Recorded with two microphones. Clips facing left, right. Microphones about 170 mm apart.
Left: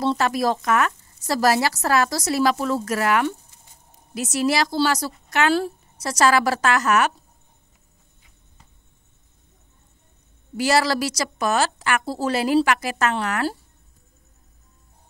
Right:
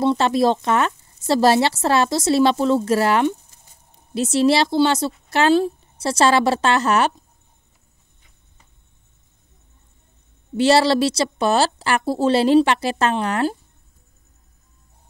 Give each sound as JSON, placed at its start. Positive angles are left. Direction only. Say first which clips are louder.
{"t": 0.0, "sound": "speech", "louder": "right 4 dB", "side_deg": -20}
{"t": 10.6, "sound": "speech", "louder": "right 5 dB", "side_deg": -30}